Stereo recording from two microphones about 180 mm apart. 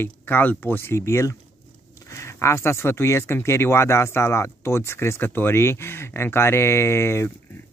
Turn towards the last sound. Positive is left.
turn(degrees=15)  # may be behind; listen again after turning